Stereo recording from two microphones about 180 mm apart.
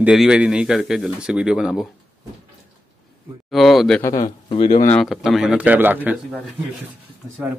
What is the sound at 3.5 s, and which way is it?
Speech, centre (ahead or behind).